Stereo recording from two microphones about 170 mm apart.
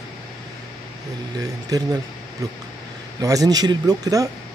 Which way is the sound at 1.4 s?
20° right (ahead or behind).